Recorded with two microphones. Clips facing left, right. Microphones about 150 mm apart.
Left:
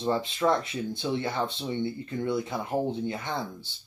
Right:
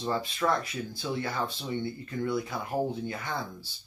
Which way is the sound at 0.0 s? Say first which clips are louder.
Left 3 dB; 20° left (ahead or behind).